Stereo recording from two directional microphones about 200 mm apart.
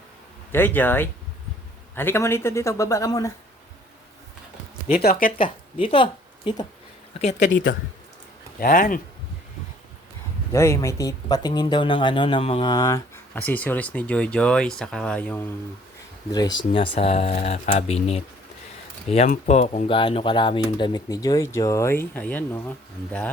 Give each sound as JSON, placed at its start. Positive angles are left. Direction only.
{"t": 0.5, "sound": "speech", "side_deg": 10}
{"t": 4.9, "sound": "speech", "side_deg": 45}
{"t": 5.4, "sound": "speech", "side_deg": 25}
{"t": 7.4, "sound": "speech", "side_deg": 75}
{"t": 8.6, "sound": "speech", "side_deg": 45}
{"t": 10.5, "sound": "speech", "side_deg": 15}
{"t": 13.3, "sound": "speech", "side_deg": 10}
{"t": 16.3, "sound": "speech", "side_deg": 20}